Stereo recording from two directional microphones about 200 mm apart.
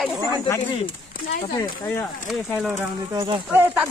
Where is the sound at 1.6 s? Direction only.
15° left (ahead or behind).